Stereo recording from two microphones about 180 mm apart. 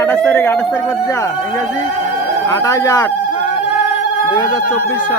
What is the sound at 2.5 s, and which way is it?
Speech, 20° left (ahead or behind).